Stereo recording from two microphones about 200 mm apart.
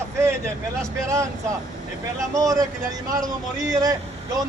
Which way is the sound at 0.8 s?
15° right (ahead or behind).